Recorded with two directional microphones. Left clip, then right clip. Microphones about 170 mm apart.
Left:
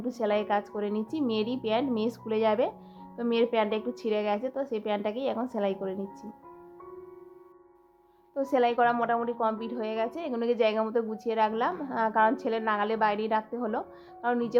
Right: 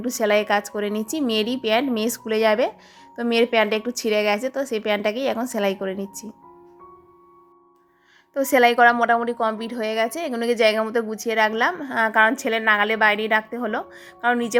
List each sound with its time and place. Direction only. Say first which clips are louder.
0.0 s a woman's voice: right 8 dB; 30° right (ahead or behind)
8.3 s a woman's voice: right 9 dB; 30° right (ahead or behind); by 14.5 s 15° right (ahead or behind)